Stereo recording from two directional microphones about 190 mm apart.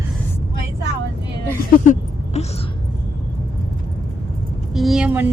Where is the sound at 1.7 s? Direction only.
45° left (ahead or behind).